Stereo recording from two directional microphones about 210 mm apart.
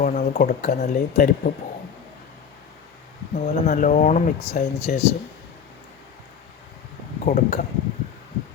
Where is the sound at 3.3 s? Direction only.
40° left (ahead or behind).